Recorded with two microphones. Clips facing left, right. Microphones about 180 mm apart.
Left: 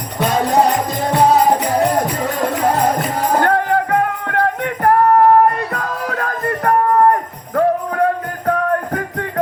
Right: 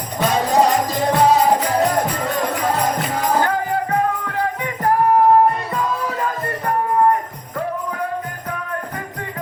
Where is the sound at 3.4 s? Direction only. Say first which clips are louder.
Left 5 dB; 65° left (ahead or behind).